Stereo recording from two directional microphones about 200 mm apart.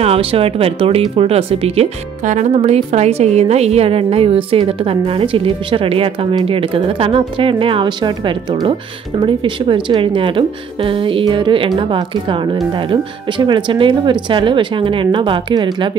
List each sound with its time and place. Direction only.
0.0 s speech: 30° right (ahead or behind)